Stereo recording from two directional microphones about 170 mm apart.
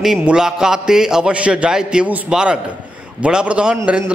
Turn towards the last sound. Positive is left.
turn(degrees=-5)  # may be behind; listen again after turning